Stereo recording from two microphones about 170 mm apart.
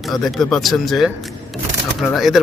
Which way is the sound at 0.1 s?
Centre (ahead or behind).